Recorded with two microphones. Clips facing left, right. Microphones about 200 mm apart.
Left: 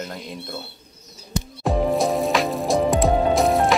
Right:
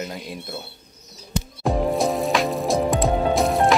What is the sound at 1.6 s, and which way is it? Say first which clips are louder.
Music: left 1 dB; centre (ahead or behind).